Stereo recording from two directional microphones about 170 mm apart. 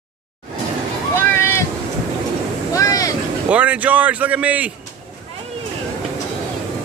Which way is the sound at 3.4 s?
5° right (ahead or behind).